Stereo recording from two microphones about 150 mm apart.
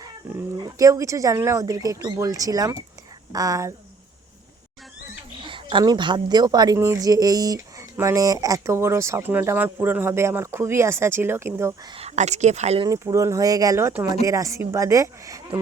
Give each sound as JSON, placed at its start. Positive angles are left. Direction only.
{"t": 0.3, "sound": "speech", "side_deg": -20}
{"t": 5.4, "sound": "a woman's voice", "side_deg": -35}
{"t": 11.9, "sound": "speech", "side_deg": -45}
{"t": 12.8, "sound": "speech", "side_deg": -25}